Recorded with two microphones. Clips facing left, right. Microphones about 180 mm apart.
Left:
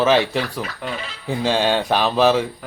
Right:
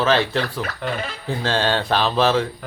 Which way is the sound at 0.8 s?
5° left (ahead or behind).